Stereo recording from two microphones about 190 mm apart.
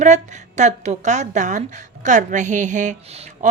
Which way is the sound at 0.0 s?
40° right (ahead or behind).